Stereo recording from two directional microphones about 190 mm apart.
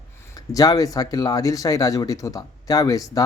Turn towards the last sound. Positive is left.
turn(degrees=20)  # may be behind; listen again after turning